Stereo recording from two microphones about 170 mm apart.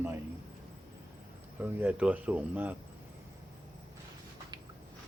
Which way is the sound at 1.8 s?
10° right (ahead or behind).